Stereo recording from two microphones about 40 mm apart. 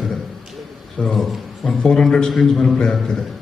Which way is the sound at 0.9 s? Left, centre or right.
Centre.